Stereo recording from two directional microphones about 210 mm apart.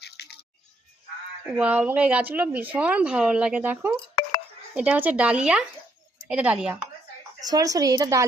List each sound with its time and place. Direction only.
0.0 s music: 50° left (ahead or behind)
1.5 s a woman's voice: 5° right (ahead or behind)
7.4 s a woman's voice: 15° right (ahead or behind)